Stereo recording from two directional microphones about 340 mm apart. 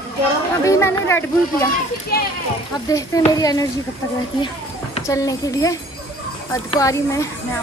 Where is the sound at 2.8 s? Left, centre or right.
Centre.